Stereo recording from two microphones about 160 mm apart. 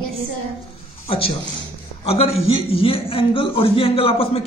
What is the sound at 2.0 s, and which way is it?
A man's voice, 40° left (ahead or behind).